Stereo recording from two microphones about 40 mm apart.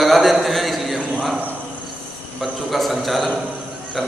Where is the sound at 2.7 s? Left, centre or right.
Centre.